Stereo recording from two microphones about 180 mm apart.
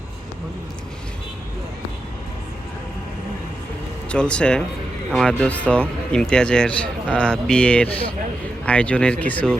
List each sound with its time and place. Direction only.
4.1 s speech: 5° left (ahead or behind)